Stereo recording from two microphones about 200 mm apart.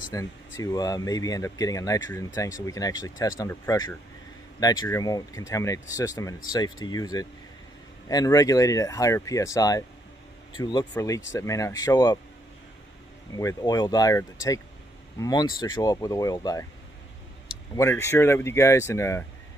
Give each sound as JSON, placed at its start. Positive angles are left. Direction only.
{"t": 0.1, "sound": "speech", "side_deg": 15}
{"t": 13.4, "sound": "speech", "side_deg": 15}
{"t": 17.7, "sound": "speech", "side_deg": 15}